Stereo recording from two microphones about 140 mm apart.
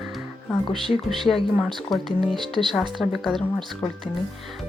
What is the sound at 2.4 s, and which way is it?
Speech, 35° right (ahead or behind).